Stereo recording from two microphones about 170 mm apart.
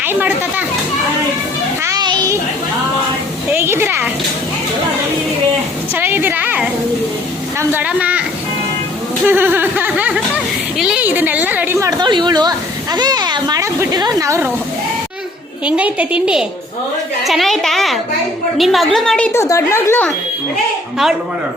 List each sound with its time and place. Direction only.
0.0 s speech: 10° right (ahead or behind)
1.8 s children playing: 20° right (ahead or behind)
3.5 s speech: 15° right (ahead or behind)
5.9 s speech: 10° right (ahead or behind)
9.2 s a woman's voice: 10° right (ahead or behind)
15.6 s a woman's voice: 5° right (ahead or behind); by 20.1 s 15° left (ahead or behind)